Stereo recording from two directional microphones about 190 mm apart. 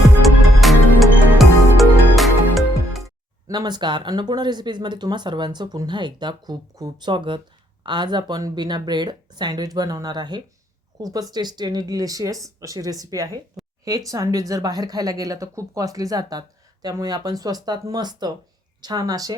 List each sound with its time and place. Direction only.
0.2 s music: centre (ahead or behind)
3.4 s speech: 20° right (ahead or behind)